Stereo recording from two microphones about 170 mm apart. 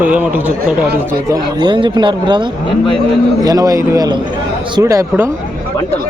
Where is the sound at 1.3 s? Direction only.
25° right (ahead or behind).